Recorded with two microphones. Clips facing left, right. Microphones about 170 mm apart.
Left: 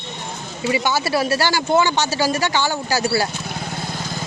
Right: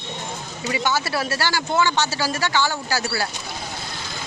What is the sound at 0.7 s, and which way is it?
Speech, 15° left (ahead or behind).